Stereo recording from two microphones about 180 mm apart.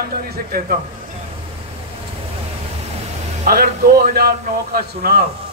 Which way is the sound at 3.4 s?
55° right (ahead or behind).